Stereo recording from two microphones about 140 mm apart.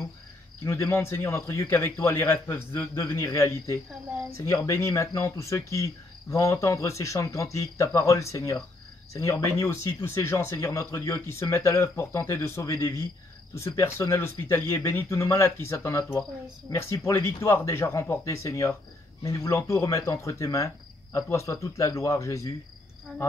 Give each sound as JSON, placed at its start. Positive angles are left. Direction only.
{"t": 0.7, "sound": "speech", "side_deg": 20}